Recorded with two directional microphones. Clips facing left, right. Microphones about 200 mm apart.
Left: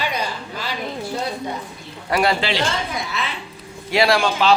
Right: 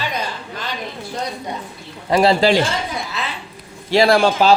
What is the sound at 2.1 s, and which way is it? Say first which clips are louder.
Speech: right 5 dB; 25° right (ahead or behind).